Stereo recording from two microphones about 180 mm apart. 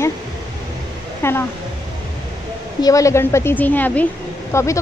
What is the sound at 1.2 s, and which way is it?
Speech, 15° left (ahead or behind).